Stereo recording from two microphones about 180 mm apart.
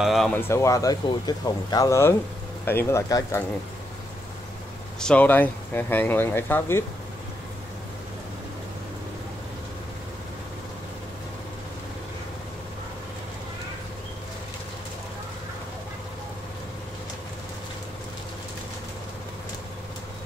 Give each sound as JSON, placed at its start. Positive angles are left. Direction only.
{"t": 0.0, "sound": "speech", "side_deg": 0}
{"t": 0.4, "sound": "speech", "side_deg": 15}
{"t": 5.0, "sound": "speech", "side_deg": 10}